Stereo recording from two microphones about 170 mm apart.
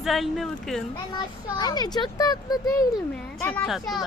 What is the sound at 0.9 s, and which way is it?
A child's voice, 25° left (ahead or behind).